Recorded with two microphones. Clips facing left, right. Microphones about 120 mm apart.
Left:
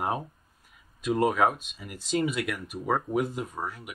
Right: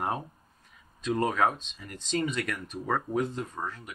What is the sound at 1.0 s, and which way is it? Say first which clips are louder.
Speech: left 2 dB; 10° left (ahead or behind).